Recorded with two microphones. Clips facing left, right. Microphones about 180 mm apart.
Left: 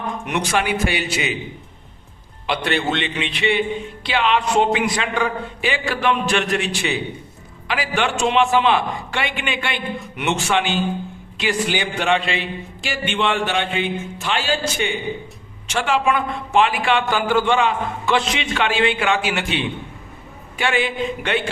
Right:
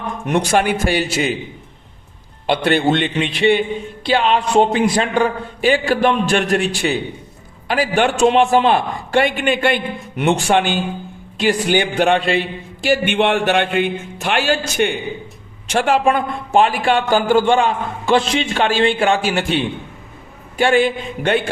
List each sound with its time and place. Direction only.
0.3 s a man's voice: 45° right (ahead or behind)
2.5 s a man's voice: 50° right (ahead or behind)
10.2 s a man's voice: 35° right (ahead or behind)
10.5 s a man's voice: 50° right (ahead or behind)
15.7 s a man's voice: 50° right (ahead or behind)